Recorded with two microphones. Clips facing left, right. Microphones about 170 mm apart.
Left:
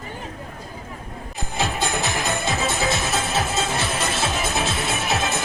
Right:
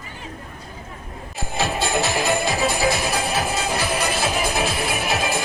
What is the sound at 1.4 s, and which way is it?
Music, 20° left (ahead or behind).